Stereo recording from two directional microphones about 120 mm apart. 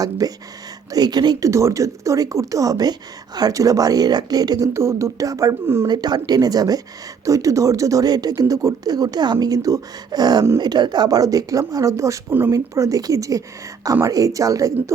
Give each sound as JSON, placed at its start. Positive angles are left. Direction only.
{"t": 0.0, "sound": "speech", "side_deg": -30}
{"t": 5.9, "sound": "speech", "side_deg": -35}